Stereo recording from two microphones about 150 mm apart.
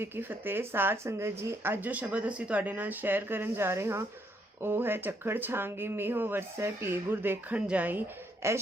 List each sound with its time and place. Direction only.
0.0 s speech: 15° right (ahead or behind)